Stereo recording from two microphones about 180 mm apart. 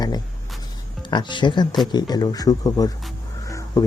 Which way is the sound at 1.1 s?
25° left (ahead or behind).